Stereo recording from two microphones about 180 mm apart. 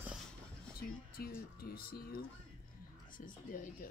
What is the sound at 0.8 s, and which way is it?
Speech, 55° left (ahead or behind).